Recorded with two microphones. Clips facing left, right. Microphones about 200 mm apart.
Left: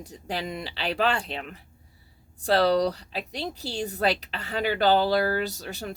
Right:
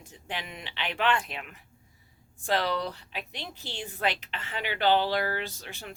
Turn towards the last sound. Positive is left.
turn(degrees=40)  # may be behind; listen again after turning